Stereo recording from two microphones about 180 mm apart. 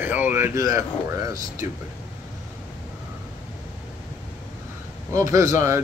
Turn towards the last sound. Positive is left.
turn(degrees=-15)  # may be behind; listen again after turning